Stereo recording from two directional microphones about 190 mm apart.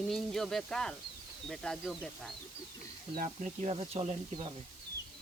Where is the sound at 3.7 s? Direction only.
30° right (ahead or behind).